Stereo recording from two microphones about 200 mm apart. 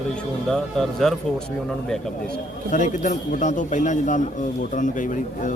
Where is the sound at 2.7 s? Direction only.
40° left (ahead or behind).